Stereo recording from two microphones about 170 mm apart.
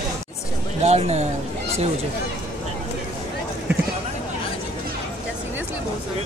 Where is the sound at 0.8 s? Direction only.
40° right (ahead or behind).